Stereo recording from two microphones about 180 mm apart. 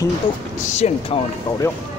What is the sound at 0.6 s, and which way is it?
Speech, 40° left (ahead or behind).